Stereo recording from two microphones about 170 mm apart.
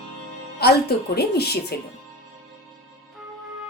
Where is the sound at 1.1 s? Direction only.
70° left (ahead or behind).